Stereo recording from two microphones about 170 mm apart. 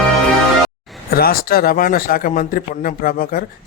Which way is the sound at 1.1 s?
60° left (ahead or behind).